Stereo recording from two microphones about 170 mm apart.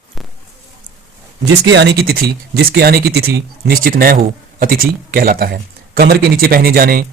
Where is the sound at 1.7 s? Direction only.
90° right.